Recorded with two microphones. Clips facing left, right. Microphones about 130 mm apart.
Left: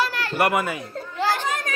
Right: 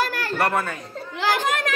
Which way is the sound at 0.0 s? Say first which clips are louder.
Even; 45° right (ahead or behind).